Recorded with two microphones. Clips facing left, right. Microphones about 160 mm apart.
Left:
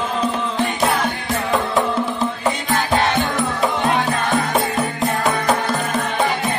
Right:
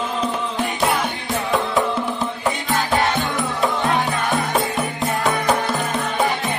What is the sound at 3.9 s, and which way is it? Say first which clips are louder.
Music: left 2 dB; centre (ahead or behind).